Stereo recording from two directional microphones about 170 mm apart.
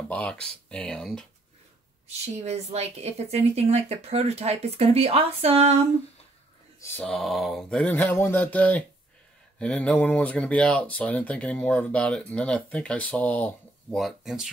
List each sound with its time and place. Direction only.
0.1 s speech: 5° left (ahead or behind)
2.0 s a woman's voice: 40° right (ahead or behind)
6.8 s speech: 10° left (ahead or behind)